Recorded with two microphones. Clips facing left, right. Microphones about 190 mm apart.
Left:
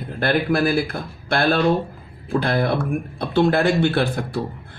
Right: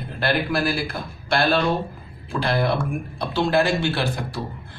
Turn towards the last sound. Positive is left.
turn(degrees=55)  # may be behind; listen again after turning